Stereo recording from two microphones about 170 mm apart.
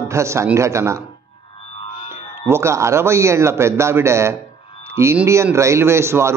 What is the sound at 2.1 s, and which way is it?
A man's voice, 15° right (ahead or behind).